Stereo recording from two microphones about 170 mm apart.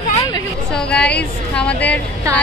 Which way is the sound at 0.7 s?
5° left (ahead or behind).